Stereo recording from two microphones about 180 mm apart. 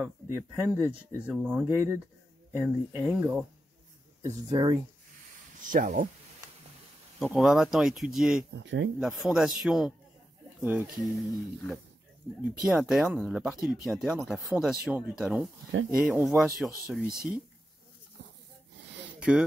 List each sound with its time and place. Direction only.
0.0 s speech: 15° right (ahead or behind)
4.2 s speech: 20° right (ahead or behind)
5.6 s speech: 45° right (ahead or behind)
7.2 s speech: centre (ahead or behind)
8.5 s speech: 85° right
9.0 s speech: centre (ahead or behind)
12.4 s speech: 5° right (ahead or behind)
19.1 s a sound: 5° right (ahead or behind)